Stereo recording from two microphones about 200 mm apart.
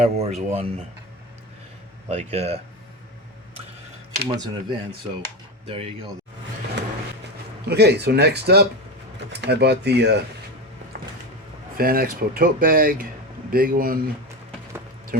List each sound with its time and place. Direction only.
0.0 s speech: 35° right (ahead or behind)
2.0 s speech: 30° right (ahead or behind)
4.4 s speech: 25° right (ahead or behind)
7.7 s speech: 55° right (ahead or behind)
11.8 s speech: 45° right (ahead or behind)